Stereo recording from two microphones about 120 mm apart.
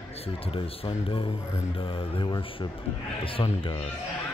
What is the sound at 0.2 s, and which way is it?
Speech, 50° left (ahead or behind).